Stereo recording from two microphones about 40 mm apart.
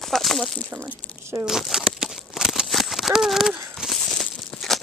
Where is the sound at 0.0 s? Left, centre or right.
Centre.